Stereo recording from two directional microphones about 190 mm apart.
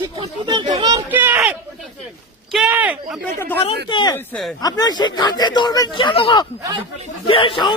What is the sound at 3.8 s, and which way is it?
Speech, 25° left (ahead or behind).